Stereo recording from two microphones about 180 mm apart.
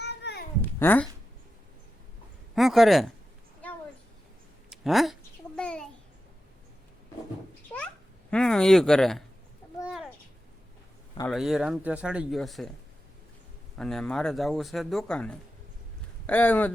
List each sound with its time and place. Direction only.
0.0 s babbling: 70° left (ahead or behind)
0.8 s speech: 10° left (ahead or behind)
2.6 s speech: centre (ahead or behind)
4.7 s a sound: centre (ahead or behind)
7.7 s babbling: 10° left (ahead or behind)
8.3 s speech: 5° left (ahead or behind)
9.8 s a sound: 5° right (ahead or behind)
11.3 s speech: centre (ahead or behind)
13.7 s speech: 5° left (ahead or behind)